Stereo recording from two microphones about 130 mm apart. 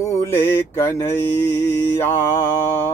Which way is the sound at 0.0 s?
20° left (ahead or behind).